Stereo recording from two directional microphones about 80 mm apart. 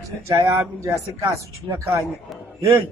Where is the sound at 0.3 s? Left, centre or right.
Right.